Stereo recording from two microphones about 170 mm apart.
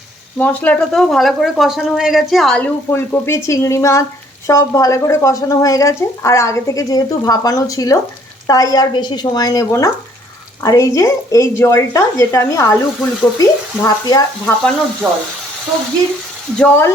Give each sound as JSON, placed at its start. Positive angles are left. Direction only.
{"t": 0.3, "sound": "speech", "side_deg": 10}
{"t": 2.9, "sound": "speech", "side_deg": 15}
{"t": 15.0, "sound": "speech", "side_deg": -15}
{"t": 16.6, "sound": "speech", "side_deg": 10}